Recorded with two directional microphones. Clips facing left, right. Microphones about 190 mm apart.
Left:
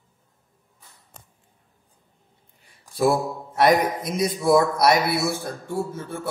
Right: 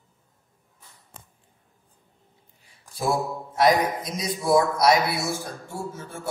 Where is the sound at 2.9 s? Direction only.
60° left (ahead or behind).